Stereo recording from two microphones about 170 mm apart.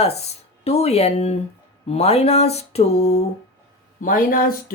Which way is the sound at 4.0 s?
55° left (ahead or behind).